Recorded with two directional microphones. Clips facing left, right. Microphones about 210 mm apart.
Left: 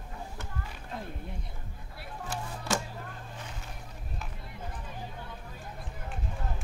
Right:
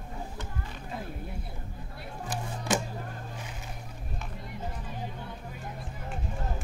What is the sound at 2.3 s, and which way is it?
Music, 15° right (ahead or behind).